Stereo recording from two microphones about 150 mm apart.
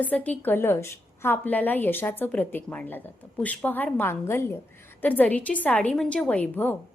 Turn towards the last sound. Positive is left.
turn(degrees=15)  # may be behind; listen again after turning